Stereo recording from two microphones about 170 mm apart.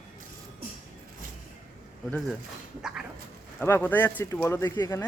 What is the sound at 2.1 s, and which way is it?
Speech, centre (ahead or behind).